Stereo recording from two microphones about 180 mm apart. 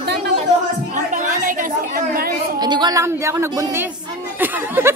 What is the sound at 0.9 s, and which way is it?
Chatter, 45° right (ahead or behind).